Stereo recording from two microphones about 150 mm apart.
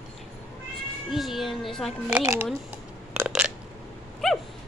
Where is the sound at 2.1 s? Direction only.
15° right (ahead or behind).